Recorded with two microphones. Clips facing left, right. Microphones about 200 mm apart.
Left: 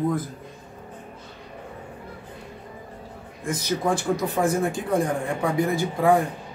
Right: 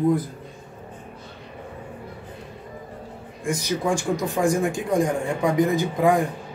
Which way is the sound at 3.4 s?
10° right (ahead or behind).